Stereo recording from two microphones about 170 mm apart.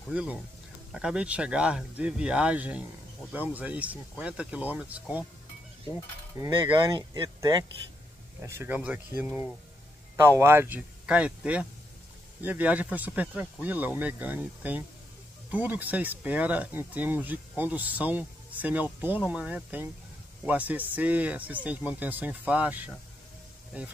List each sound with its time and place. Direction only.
0.1 s speech: 5° right (ahead or behind)
6.4 s speech: 30° right (ahead or behind); by 22.8 s 10° right (ahead or behind)